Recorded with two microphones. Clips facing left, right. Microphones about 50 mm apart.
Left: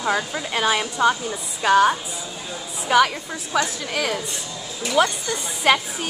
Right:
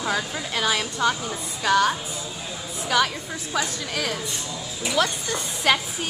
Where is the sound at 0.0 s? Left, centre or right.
Centre.